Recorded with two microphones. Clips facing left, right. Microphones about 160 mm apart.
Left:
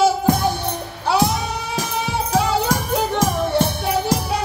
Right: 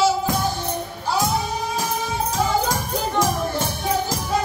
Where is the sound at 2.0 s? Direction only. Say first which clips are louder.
Left 6 dB; 70° left (ahead or behind).